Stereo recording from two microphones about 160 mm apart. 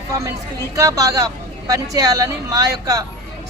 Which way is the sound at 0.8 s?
20° right (ahead or behind).